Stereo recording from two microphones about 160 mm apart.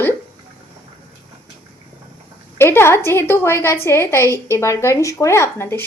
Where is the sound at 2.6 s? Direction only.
15° left (ahead or behind).